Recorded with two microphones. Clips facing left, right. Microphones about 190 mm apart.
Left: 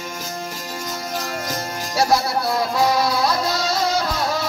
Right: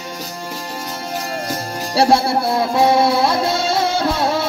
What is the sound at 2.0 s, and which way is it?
Music, 30° right (ahead or behind).